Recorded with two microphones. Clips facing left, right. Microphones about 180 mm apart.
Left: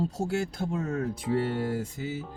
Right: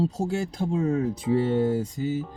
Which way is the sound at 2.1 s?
5° left (ahead or behind).